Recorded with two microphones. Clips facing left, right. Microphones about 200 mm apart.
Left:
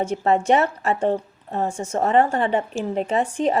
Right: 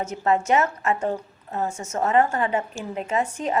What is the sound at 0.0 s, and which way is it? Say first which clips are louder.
A woman's voice: left 3 dB; 30° left (ahead or behind).